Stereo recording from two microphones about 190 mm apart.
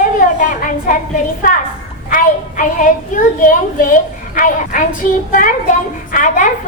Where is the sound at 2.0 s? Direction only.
45° left (ahead or behind).